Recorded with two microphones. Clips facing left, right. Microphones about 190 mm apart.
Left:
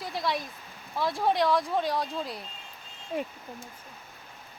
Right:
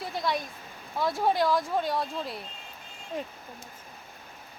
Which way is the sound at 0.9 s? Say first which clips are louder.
Even; centre (ahead or behind).